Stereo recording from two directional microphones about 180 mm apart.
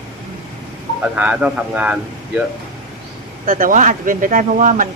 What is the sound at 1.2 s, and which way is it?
Speech, 5° right (ahead or behind).